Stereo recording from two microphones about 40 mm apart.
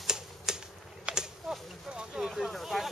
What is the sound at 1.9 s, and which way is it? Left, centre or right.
Vehicle, right.